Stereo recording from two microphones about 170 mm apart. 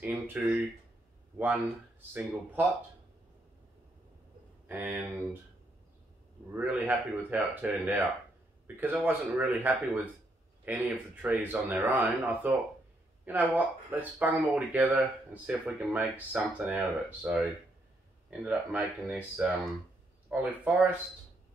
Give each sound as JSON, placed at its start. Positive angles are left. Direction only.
{"t": 0.0, "sound": "a sound", "side_deg": -10}
{"t": 2.1, "sound": "speech", "side_deg": -10}
{"t": 4.6, "sound": "speech", "side_deg": -10}
{"t": 6.5, "sound": "speech", "side_deg": -10}